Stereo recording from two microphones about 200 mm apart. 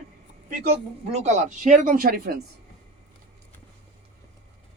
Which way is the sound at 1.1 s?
35° right (ahead or behind).